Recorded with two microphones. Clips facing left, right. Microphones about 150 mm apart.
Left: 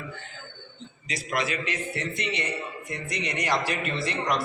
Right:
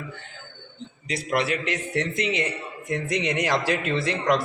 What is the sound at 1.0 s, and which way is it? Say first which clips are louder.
A man's voice: right 4 dB; 60° right (ahead or behind).